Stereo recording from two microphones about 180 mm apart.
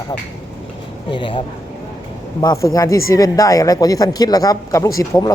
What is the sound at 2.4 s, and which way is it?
Speech, 20° left (ahead or behind).